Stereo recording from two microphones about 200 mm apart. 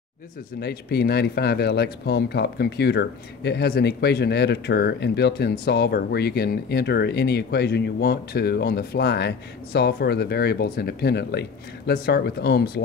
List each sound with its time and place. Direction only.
0.6 s speech: 55° left (ahead or behind)